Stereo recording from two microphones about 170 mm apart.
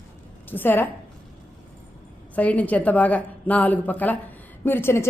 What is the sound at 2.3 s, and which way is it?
A woman's voice, 10° left (ahead or behind).